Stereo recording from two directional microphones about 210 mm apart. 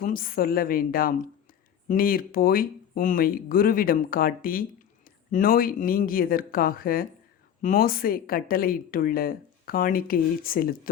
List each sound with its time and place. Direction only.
0.0 s speech: 45° left (ahead or behind)